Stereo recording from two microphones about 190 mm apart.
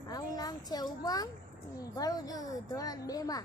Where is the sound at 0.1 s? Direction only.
20° left (ahead or behind).